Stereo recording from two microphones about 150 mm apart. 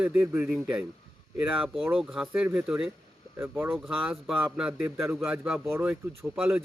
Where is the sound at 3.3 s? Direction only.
15° right (ahead or behind).